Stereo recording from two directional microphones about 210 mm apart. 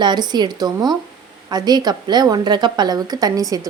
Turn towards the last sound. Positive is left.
turn(degrees=-15)  # may be behind; listen again after turning